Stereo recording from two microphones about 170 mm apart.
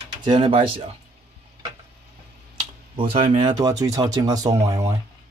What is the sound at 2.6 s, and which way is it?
Speech, 30° right (ahead or behind).